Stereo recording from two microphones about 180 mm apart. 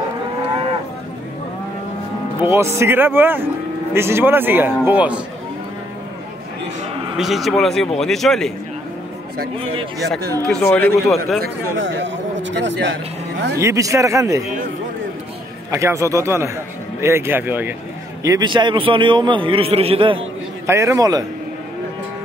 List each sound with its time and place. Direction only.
2.4 s a man's voice: 15° right (ahead or behind)
7.2 s speech: centre (ahead or behind)
9.9 s speech: centre (ahead or behind)
11.8 s a man's voice: 85° right
13.6 s a man's voice: 15° right (ahead or behind)
15.7 s a man's voice: 15° right (ahead or behind)
18.2 s a man's voice: 20° right (ahead or behind)
20.6 s a man's voice: 15° right (ahead or behind)